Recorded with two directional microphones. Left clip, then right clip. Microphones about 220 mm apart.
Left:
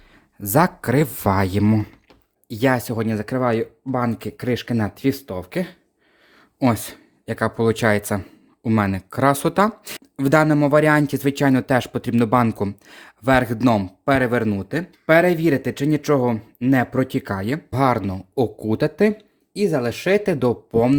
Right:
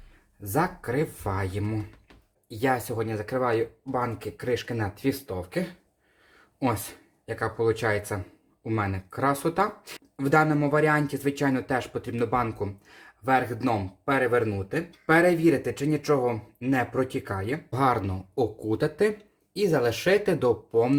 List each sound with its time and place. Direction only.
0.4 s speech: 50° left (ahead or behind); by 20.9 s 30° left (ahead or behind)